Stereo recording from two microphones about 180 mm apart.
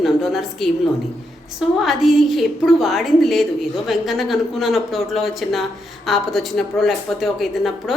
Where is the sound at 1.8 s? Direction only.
Centre (ahead or behind).